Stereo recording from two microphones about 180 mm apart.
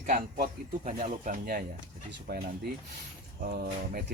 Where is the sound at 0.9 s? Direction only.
40° right (ahead or behind).